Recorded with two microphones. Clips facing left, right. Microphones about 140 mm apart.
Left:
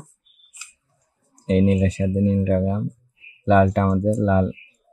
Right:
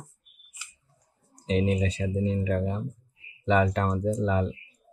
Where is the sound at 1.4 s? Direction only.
55° left (ahead or behind).